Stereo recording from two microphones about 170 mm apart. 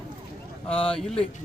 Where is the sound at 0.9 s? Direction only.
5° left (ahead or behind).